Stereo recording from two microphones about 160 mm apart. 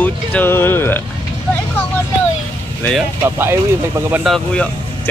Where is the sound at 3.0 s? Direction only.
15° right (ahead or behind).